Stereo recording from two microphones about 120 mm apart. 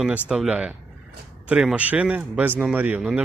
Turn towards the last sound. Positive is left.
turn(degrees=-5)  # may be behind; listen again after turning